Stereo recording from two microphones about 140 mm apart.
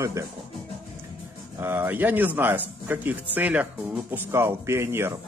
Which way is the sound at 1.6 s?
15° right (ahead or behind).